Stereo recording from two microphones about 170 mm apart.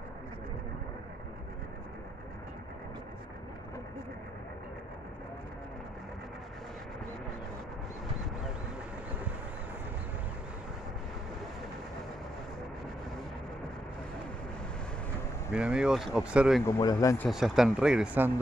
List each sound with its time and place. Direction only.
15.5 s speech: 5° right (ahead or behind)
16.6 s speech: 20° left (ahead or behind)
17.3 s speech: centre (ahead or behind)